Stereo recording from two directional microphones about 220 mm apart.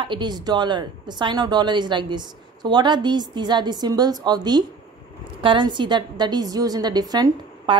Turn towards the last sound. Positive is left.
turn(degrees=-20)  # may be behind; listen again after turning